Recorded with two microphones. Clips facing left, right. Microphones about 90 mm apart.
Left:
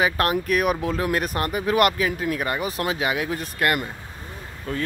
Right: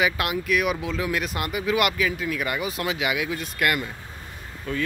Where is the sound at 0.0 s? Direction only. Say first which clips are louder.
Left 3 dB; 40° left (ahead or behind).